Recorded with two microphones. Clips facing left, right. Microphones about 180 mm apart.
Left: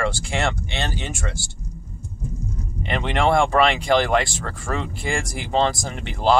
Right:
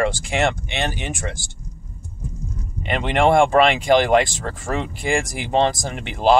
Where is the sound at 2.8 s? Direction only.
15° right (ahead or behind).